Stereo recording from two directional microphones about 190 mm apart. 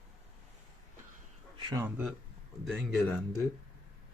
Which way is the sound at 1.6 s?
25° right (ahead or behind).